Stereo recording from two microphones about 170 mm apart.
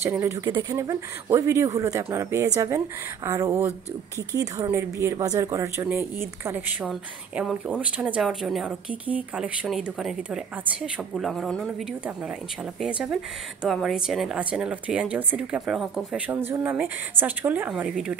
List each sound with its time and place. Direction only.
0.0 s speech: 15° right (ahead or behind); by 11.7 s 5° left (ahead or behind)
12.8 s speech: 5° right (ahead or behind)
16.3 s speech: 15° right (ahead or behind)